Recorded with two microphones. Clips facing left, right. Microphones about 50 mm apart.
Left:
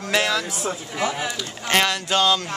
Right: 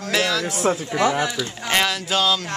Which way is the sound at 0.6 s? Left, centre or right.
Right.